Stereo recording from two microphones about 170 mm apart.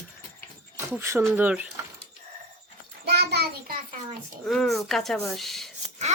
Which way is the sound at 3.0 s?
75° right (ahead or behind).